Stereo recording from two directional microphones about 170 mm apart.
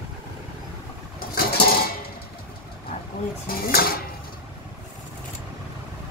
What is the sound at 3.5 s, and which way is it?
Speech, 60° left (ahead or behind).